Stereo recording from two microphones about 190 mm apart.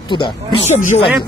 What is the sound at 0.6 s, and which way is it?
Speech, 40° left (ahead or behind).